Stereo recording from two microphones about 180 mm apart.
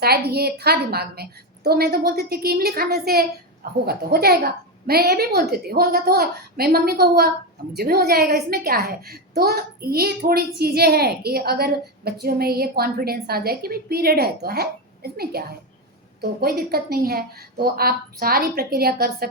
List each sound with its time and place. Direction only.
0.0 s a woman's voice: 60° right (ahead or behind)